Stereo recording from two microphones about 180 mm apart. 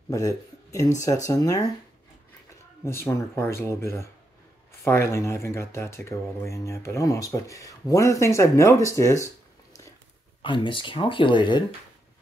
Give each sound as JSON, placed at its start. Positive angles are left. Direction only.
{"t": 0.1, "sound": "speech", "side_deg": 20}
{"t": 2.8, "sound": "speech", "side_deg": 15}
{"t": 10.4, "sound": "speech", "side_deg": 25}